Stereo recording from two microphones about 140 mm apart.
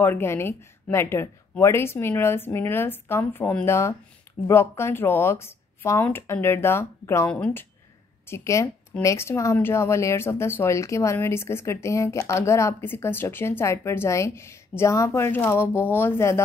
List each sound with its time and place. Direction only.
0.0 s speech: 15° left (ahead or behind)
8.3 s speech: 20° left (ahead or behind)